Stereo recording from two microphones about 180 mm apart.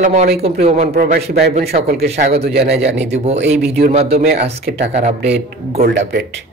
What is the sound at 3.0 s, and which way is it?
Speech, 40° right (ahead or behind).